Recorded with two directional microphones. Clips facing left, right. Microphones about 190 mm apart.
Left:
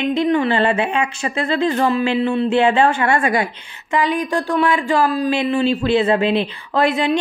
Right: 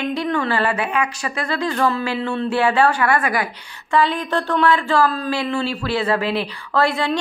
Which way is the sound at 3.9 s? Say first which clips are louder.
Even; 15° left (ahead or behind).